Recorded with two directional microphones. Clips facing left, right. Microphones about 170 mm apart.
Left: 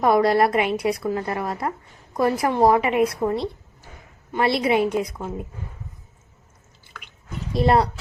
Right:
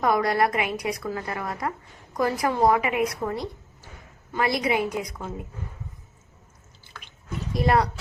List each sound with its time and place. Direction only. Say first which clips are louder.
0.0 s a woman's voice: left 5 dB; 25° left (ahead or behind)
7.5 s a woman's voice: left 3 dB; 30° left (ahead or behind)